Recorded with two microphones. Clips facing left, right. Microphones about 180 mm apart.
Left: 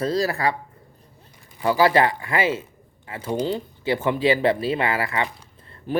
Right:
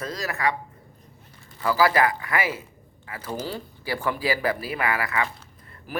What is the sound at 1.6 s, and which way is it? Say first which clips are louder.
Speech: left 3 dB; 25° left (ahead or behind).